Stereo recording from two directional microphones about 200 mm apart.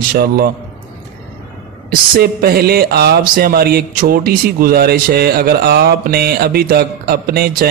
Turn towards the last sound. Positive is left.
turn(degrees=-50)  # may be behind; listen again after turning